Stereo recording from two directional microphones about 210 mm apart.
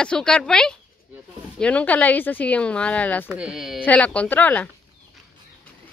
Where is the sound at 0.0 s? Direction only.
5° left (ahead or behind).